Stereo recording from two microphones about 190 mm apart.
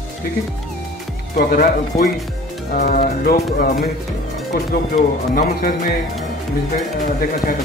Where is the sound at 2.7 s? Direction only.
45° left (ahead or behind).